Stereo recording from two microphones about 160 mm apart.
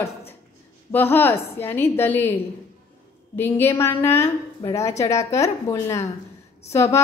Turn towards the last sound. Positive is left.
turn(degrees=15)  # may be behind; listen again after turning